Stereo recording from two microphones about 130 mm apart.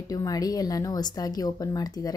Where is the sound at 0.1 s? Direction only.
30° left (ahead or behind).